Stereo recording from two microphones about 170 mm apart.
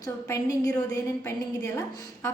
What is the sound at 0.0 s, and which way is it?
A woman's voice, 20° left (ahead or behind).